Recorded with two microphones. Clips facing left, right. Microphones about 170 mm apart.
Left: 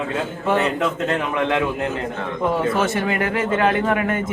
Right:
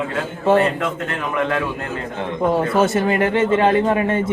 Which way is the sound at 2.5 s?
30° right (ahead or behind).